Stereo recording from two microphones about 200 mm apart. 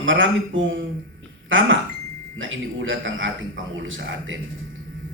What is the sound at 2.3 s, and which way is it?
Speech, 75° right (ahead or behind).